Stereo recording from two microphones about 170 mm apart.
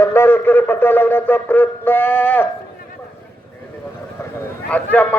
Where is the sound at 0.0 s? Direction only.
15° left (ahead or behind).